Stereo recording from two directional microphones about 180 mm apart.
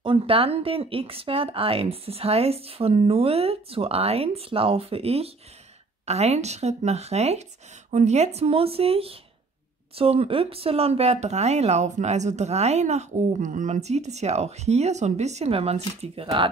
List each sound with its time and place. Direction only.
0.0 s speech: 30° right (ahead or behind)